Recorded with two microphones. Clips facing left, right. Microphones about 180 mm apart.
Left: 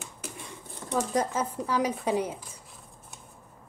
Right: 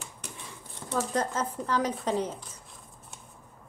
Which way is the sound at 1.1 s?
10° left (ahead or behind).